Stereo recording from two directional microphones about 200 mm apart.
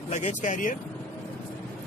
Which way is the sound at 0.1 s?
35° left (ahead or behind).